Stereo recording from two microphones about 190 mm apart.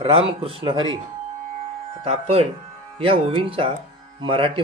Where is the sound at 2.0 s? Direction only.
30° right (ahead or behind).